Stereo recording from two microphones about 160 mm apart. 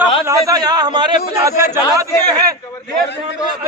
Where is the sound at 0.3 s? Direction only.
20° right (ahead or behind).